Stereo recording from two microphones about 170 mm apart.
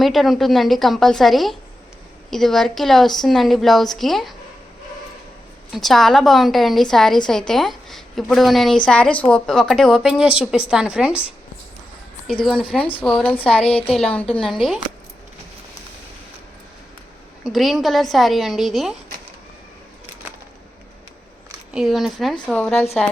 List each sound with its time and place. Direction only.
0.0 s a woman's voice: centre (ahead or behind)
5.7 s a woman's voice: centre (ahead or behind)
13.0 s a woman's voice: 5° left (ahead or behind)
13.4 s speech: 35° left (ahead or behind)
13.9 s a woman's voice: 5° left (ahead or behind)
17.4 s a woman's voice: centre (ahead or behind)
21.7 s a woman's voice: centre (ahead or behind)